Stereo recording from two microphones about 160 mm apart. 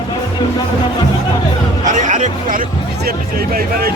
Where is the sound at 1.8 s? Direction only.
50° right (ahead or behind); by 3.9 s 70° right (ahead or behind).